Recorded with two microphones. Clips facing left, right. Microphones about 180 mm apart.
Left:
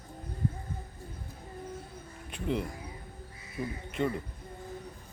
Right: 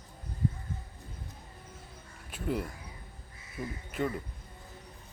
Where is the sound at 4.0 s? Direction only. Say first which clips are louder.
Left 2 dB; 5° right (ahead or behind).